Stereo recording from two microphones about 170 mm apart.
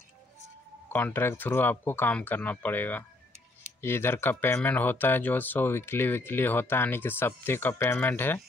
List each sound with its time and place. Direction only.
0.8 s speech: 10° left (ahead or behind)